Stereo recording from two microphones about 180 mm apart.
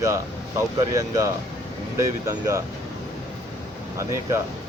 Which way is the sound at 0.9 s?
20° right (ahead or behind).